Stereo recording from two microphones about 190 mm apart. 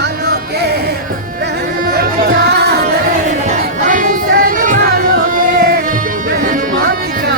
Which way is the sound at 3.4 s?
40° right (ahead or behind).